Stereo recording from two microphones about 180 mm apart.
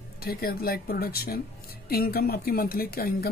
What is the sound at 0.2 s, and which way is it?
Speech, 60° left (ahead or behind).